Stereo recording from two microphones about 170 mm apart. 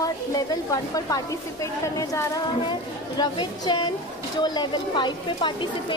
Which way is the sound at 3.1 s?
25° left (ahead or behind).